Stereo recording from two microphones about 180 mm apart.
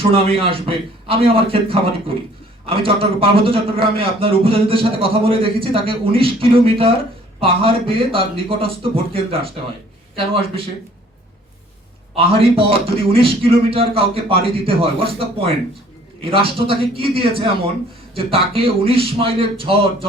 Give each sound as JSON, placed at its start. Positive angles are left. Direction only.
{"t": 0.0, "sound": "a man's voice", "side_deg": -30}
{"t": 12.1, "sound": "a man's voice", "side_deg": -30}